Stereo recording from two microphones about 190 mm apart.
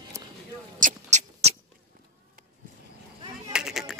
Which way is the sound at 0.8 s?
40° right (ahead or behind).